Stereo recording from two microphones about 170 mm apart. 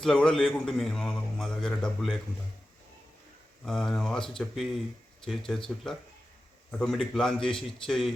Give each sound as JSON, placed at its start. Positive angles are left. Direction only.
{"t": 0.0, "sound": "a man's voice", "side_deg": 5}
{"t": 3.7, "sound": "a man's voice", "side_deg": 0}